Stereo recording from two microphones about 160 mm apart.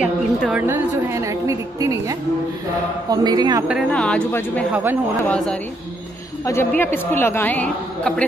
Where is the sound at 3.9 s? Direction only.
5° left (ahead or behind).